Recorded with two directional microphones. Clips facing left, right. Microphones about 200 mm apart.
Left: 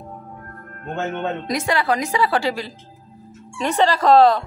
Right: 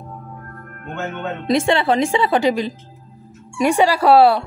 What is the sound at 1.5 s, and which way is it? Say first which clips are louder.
A woman's voice: right 6 dB; 25° right (ahead or behind).